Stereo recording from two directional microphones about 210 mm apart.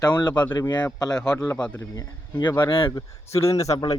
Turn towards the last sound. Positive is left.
turn(degrees=20)  # may be behind; listen again after turning